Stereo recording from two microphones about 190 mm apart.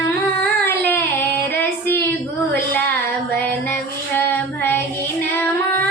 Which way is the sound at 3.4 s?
10° left (ahead or behind).